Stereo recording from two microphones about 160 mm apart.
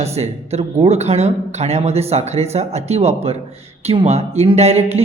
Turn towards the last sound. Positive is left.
turn(degrees=-40)  # may be behind; listen again after turning